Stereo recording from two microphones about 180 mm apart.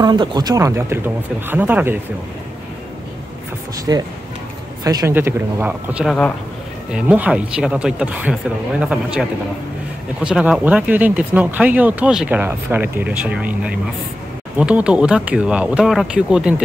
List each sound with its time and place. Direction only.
0.0 s speech: 25° right (ahead or behind)
3.9 s speech: 15° right (ahead or behind)